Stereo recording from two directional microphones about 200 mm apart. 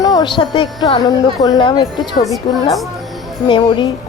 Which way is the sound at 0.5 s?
25° left (ahead or behind).